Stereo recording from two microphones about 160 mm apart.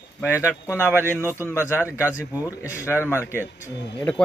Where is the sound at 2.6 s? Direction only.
20° left (ahead or behind).